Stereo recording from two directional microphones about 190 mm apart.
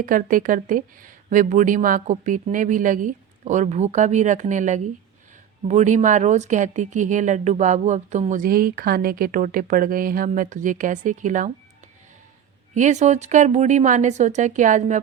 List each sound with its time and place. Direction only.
0.0 s speech: 45° right (ahead or behind)
12.7 s speech: 40° right (ahead or behind)